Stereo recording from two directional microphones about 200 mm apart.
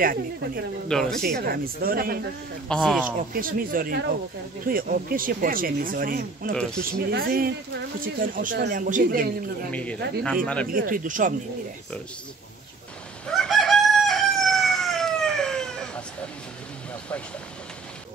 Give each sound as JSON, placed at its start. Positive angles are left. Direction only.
{"t": 0.0, "sound": "speech", "side_deg": -50}
{"t": 2.7, "sound": "speech", "side_deg": 0}
{"t": 3.3, "sound": "speech", "side_deg": -45}
{"t": 6.5, "sound": "speech", "side_deg": 5}
{"t": 6.8, "sound": "speech", "side_deg": -50}
{"t": 9.7, "sound": "speech", "side_deg": 5}
{"t": 10.7, "sound": "speech", "side_deg": -45}
{"t": 13.4, "sound": "crowing", "side_deg": 0}